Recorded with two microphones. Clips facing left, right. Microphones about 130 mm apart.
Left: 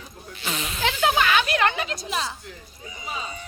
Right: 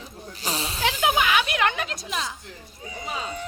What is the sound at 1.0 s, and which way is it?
Speech, 15° right (ahead or behind).